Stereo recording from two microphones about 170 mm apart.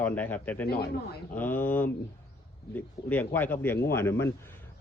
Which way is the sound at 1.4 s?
10° left (ahead or behind).